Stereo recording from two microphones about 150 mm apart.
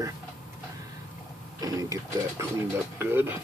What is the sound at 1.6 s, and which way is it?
Speech, 25° right (ahead or behind).